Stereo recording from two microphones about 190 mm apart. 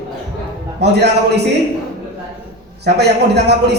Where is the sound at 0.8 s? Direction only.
60° right (ahead or behind).